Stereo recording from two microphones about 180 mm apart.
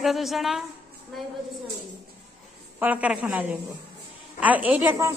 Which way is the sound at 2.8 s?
10° right (ahead or behind).